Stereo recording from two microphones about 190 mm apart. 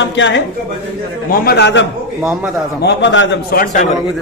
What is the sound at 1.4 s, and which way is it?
Speech, 65° left (ahead or behind).